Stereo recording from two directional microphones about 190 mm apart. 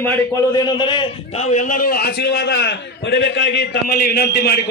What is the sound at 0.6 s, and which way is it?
A man's voice, 25° left (ahead or behind).